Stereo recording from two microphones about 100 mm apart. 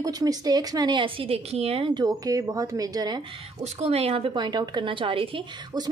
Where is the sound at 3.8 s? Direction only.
85° right.